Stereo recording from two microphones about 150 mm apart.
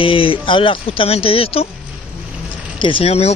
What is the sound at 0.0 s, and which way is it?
Speech, 35° left (ahead or behind).